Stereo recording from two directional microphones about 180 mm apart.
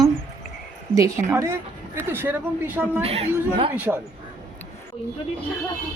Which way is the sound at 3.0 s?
35° right (ahead or behind).